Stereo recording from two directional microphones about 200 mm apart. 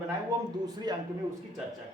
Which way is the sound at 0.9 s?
20° right (ahead or behind).